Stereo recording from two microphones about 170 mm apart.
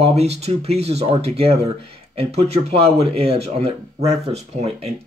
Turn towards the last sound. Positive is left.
turn(degrees=-40)  # may be behind; listen again after turning